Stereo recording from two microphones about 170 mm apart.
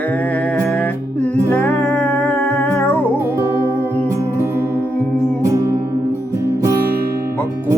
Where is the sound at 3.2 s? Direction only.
15° right (ahead or behind).